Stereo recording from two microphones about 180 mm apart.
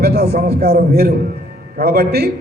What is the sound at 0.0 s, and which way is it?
A man's voice, 65° right (ahead or behind).